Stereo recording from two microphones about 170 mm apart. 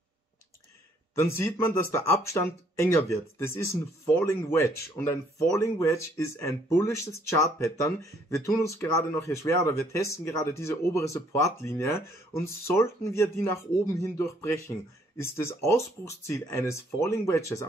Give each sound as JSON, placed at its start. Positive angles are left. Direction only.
{"t": 1.1, "sound": "speech", "side_deg": 15}